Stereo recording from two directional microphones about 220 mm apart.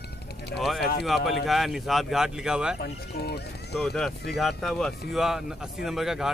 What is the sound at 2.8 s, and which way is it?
Speech, 45° left (ahead or behind).